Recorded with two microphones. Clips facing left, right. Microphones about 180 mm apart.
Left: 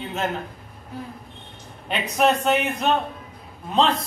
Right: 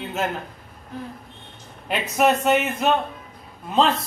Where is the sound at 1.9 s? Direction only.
5° right (ahead or behind).